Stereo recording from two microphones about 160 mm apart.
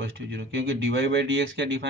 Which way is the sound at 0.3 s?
90° right.